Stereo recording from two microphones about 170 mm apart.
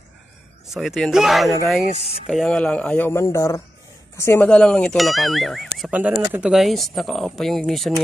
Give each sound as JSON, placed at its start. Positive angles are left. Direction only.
{"t": 0.7, "sound": "speech", "side_deg": 0}
{"t": 1.9, "sound": "speech", "side_deg": 40}
{"t": 2.2, "sound": "speech", "side_deg": 0}